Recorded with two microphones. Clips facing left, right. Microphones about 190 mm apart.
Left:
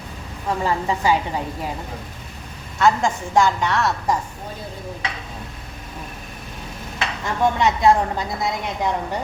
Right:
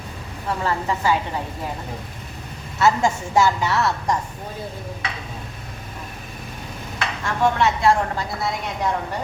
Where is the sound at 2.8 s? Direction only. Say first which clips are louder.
Even; 5° right (ahead or behind).